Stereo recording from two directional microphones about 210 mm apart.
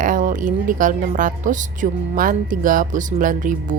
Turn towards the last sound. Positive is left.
turn(degrees=-40)  # may be behind; listen again after turning